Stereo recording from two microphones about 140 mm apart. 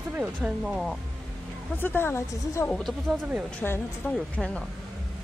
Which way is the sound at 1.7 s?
15° left (ahead or behind).